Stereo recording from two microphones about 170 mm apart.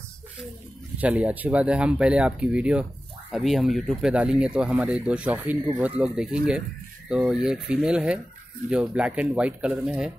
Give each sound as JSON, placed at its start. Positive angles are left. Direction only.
{"t": 0.9, "sound": "speech", "side_deg": -10}